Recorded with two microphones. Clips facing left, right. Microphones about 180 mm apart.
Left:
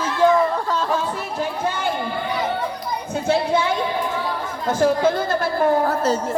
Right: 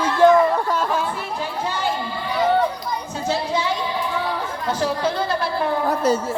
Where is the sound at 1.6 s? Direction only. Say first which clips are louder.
Right 1 dB; 55° left (ahead or behind).